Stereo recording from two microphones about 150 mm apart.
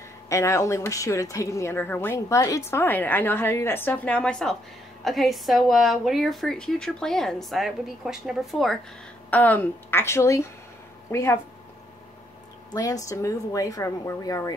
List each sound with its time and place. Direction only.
0.3 s a woman's voice: 20° left (ahead or behind); by 8.7 s centre (ahead or behind)
9.3 s speech: 10° left (ahead or behind)
12.7 s speech: 25° left (ahead or behind)